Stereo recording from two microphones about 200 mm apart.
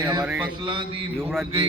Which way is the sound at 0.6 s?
25° right (ahead or behind).